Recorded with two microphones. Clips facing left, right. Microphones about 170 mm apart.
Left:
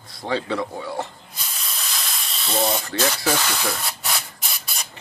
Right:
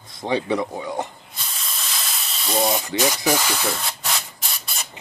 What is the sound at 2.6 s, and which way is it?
Speech, 15° right (ahead or behind).